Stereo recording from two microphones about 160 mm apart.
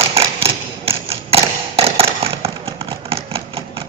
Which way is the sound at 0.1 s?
35° right (ahead or behind).